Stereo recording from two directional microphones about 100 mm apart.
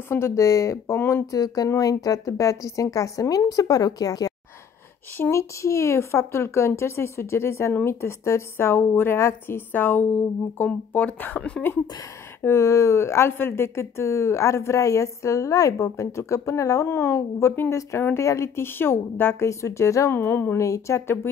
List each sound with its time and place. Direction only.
0.4 s a woman's voice: 30° left (ahead or behind)
1.3 s speech: 35° left (ahead or behind)
5.1 s a woman's voice: 25° left (ahead or behind)
12.4 s a woman's voice: 25° left (ahead or behind)